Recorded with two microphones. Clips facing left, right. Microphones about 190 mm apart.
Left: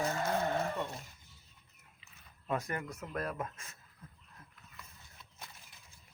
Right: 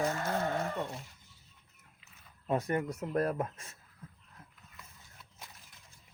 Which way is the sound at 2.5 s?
30° right (ahead or behind).